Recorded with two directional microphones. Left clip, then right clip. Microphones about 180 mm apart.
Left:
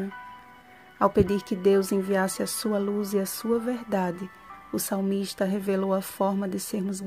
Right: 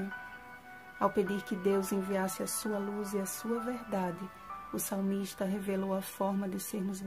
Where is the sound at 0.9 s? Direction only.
35° left (ahead or behind).